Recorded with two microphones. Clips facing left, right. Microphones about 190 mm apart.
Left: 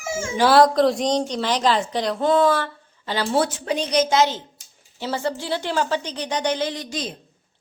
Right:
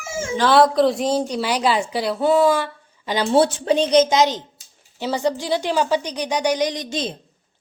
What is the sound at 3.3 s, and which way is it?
A woman's voice, 30° right (ahead or behind).